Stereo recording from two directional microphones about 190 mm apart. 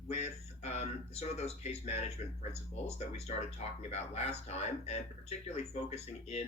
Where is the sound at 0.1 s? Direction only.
35° left (ahead or behind).